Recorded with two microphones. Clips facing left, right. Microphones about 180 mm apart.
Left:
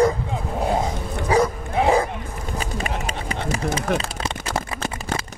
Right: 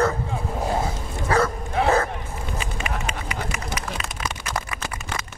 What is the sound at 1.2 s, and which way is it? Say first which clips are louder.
Bow-wow: left 2 dB; 15° left (ahead or behind).